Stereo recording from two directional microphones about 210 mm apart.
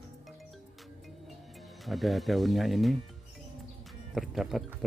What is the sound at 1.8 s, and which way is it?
Speech, centre (ahead or behind).